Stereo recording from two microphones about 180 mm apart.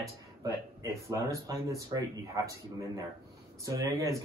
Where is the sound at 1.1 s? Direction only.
15° right (ahead or behind).